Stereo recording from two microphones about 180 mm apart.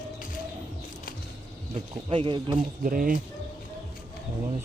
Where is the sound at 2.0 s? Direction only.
30° right (ahead or behind).